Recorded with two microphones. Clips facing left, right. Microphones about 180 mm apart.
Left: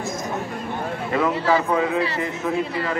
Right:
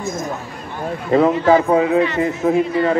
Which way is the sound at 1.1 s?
35° right (ahead or behind).